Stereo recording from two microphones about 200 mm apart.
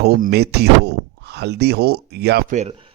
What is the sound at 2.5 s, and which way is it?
Speech, 35° right (ahead or behind).